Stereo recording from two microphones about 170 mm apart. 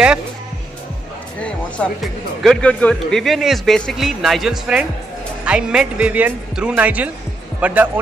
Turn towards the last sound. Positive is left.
turn(degrees=-10)  # may be behind; listen again after turning